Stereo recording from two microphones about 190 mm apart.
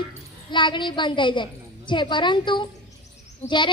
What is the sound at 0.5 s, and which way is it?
A woman's voice, 25° left (ahead or behind).